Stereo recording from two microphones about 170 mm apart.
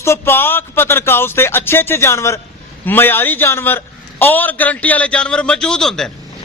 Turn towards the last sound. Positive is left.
turn(degrees=5)  # may be behind; listen again after turning